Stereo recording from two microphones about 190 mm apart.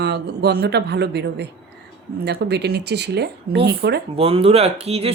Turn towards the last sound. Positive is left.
turn(degrees=-30)  # may be behind; listen again after turning